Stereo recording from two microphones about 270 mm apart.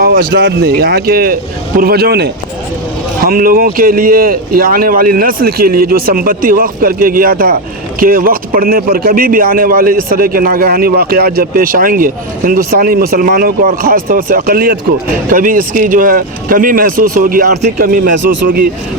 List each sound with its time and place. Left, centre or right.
0.0 s a man's voice: right